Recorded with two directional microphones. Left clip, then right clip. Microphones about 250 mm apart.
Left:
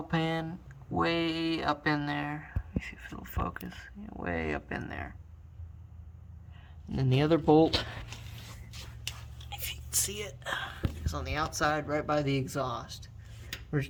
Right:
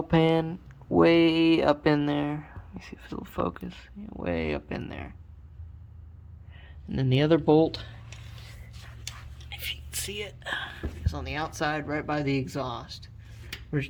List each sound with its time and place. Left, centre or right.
0.1 s speech: right
6.8 s speech: centre
9.5 s speech: centre